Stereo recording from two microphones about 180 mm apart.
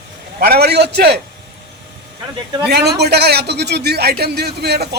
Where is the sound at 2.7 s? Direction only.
65° right (ahead or behind).